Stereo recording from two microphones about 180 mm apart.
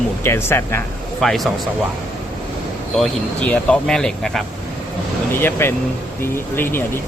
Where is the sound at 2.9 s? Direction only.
5° left (ahead or behind).